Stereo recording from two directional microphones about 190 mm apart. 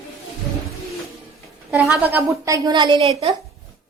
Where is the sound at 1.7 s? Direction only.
10° right (ahead or behind); by 3.1 s 25° right (ahead or behind).